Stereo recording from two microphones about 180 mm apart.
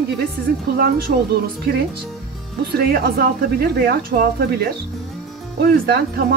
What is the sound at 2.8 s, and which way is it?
Speech, 60° right (ahead or behind).